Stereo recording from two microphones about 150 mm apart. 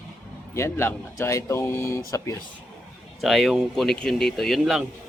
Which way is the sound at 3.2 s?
Centre (ahead or behind).